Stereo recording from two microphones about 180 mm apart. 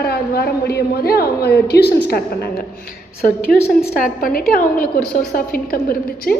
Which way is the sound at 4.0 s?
50° left (ahead or behind).